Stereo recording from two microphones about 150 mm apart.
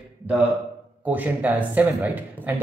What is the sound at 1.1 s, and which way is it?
Speech, 10° right (ahead or behind).